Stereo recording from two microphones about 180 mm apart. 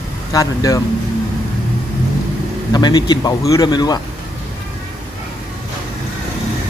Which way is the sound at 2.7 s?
25° left (ahead or behind).